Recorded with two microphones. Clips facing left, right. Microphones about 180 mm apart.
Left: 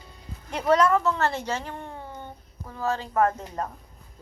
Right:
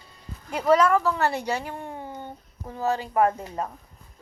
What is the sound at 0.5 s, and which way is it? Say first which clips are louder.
Speech: right 1 dB; 5° right (ahead or behind).